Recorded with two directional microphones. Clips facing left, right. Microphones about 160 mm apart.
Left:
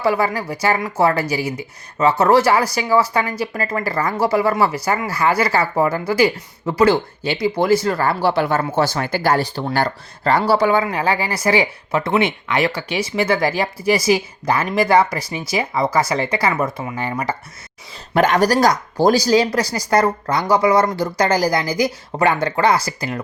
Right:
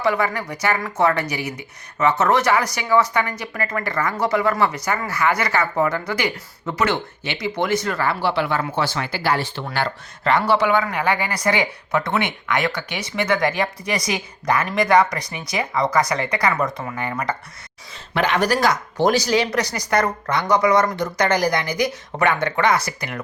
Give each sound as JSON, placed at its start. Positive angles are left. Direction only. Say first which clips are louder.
{"t": 0.0, "sound": "speech", "louder": "left 3 dB", "side_deg": 30}
{"t": 18.1, "sound": "speech", "louder": "left 4 dB", "side_deg": 45}